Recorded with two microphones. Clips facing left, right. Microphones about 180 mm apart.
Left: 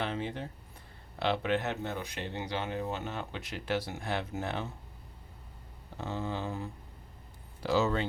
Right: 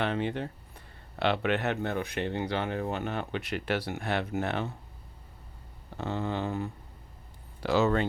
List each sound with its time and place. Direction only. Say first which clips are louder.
0.0 s speech: right 5 dB; 65° right (ahead or behind)
6.0 s speech: right 4 dB; 65° right (ahead or behind)